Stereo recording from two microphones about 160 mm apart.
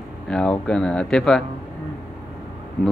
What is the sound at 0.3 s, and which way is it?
Speech, 5° left (ahead or behind).